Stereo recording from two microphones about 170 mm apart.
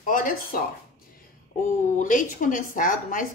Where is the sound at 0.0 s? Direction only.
55° left (ahead or behind).